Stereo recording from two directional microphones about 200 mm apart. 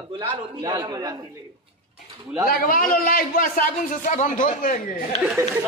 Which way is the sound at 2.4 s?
45° left (ahead or behind).